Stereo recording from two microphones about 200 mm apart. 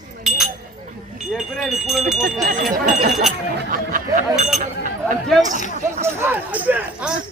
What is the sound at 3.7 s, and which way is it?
Speech, 40° right (ahead or behind).